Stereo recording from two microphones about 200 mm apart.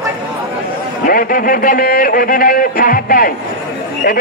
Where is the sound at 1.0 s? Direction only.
45° left (ahead or behind).